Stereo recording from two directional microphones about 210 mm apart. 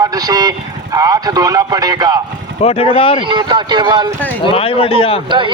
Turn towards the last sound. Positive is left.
turn(degrees=25)  # may be behind; listen again after turning